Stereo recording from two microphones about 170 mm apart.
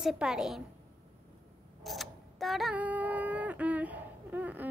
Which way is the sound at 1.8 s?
Centre (ahead or behind).